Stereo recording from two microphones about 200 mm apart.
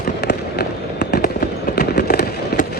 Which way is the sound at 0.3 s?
55° left (ahead or behind).